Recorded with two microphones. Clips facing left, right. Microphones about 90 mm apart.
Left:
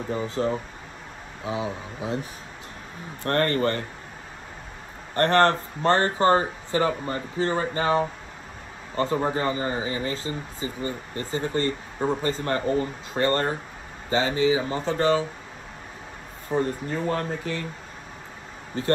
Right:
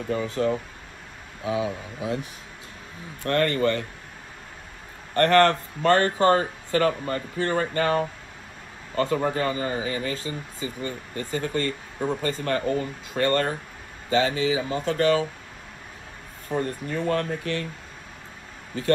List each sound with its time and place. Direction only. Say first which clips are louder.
0.1 s speech: right 2 dB; 30° left (ahead or behind)
3.3 s speech: right 1 dB; 40° left (ahead or behind)
5.1 s speech: right 1 dB; 30° left (ahead or behind)
16.5 s speech: left 2 dB; 35° left (ahead or behind)